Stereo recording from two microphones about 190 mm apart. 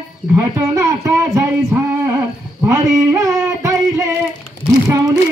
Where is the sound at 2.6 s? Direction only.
15° right (ahead or behind).